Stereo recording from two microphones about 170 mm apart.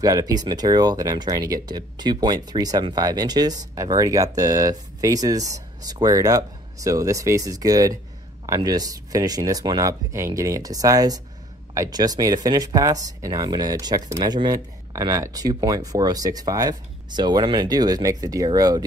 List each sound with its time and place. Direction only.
0.0 s speech: 20° right (ahead or behind)